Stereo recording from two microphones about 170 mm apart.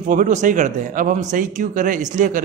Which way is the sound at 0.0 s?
45° right (ahead or behind).